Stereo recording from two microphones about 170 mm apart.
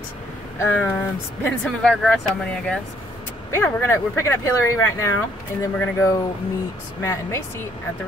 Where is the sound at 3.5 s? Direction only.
15° left (ahead or behind).